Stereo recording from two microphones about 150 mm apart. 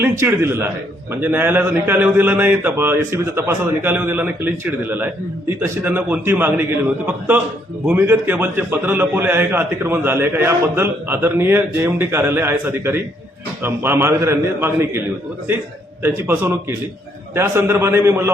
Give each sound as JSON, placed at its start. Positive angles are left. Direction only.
{"t": 0.0, "sound": "a man's voice", "side_deg": -15}
{"t": 7.9, "sound": "a man's voice", "side_deg": -15}
{"t": 16.0, "sound": "a man's voice", "side_deg": -15}